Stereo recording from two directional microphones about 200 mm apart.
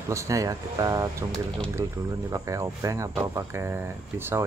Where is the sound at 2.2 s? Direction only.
15° right (ahead or behind).